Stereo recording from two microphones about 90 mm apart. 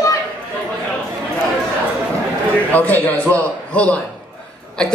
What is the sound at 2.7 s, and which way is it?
A man's voice, 20° left (ahead or behind).